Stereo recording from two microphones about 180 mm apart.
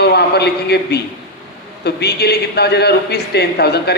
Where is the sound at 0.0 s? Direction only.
65° left (ahead or behind).